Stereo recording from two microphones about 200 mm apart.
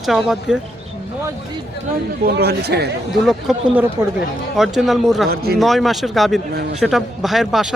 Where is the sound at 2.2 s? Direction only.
50° right (ahead or behind).